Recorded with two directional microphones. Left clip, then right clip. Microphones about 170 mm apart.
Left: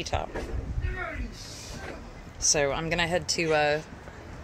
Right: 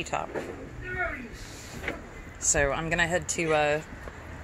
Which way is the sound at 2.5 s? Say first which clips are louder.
Right 1 dB; 25° left (ahead or behind).